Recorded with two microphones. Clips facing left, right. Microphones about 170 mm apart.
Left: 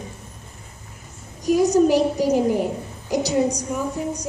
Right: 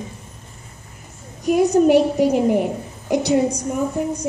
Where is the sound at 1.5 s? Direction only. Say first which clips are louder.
Right 2 dB; 60° right (ahead or behind).